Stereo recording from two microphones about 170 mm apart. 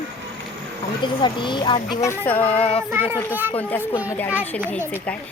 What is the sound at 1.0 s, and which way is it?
Speech, 30° left (ahead or behind).